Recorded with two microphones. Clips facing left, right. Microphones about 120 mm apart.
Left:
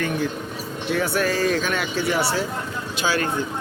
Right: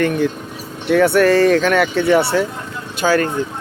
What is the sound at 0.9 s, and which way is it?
Speech, 65° right (ahead or behind).